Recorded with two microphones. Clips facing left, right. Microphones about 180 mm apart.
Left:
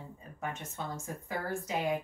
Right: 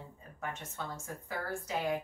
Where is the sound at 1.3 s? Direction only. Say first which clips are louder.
Left 2 dB; 15° left (ahead or behind).